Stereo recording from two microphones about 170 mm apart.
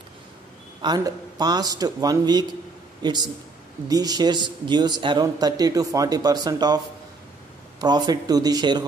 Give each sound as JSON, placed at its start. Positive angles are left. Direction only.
{"t": 0.8, "sound": "speech", "side_deg": -25}
{"t": 7.8, "sound": "speech", "side_deg": -25}